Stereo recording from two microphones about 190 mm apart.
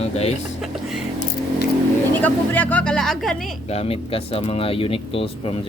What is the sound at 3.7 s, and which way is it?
Speech, 30° left (ahead or behind).